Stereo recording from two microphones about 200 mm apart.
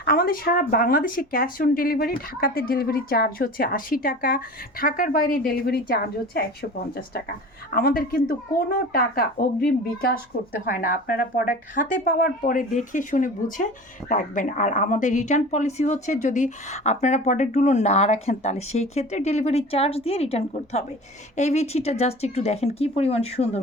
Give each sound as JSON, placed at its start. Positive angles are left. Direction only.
{"t": 0.0, "sound": "speech", "side_deg": 50}